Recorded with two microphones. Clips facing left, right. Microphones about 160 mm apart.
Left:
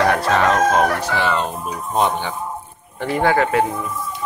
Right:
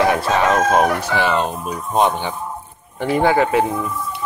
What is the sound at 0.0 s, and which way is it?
Chicken, 15° right (ahead or behind).